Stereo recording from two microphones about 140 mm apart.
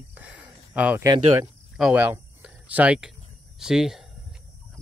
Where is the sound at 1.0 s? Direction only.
25° right (ahead or behind).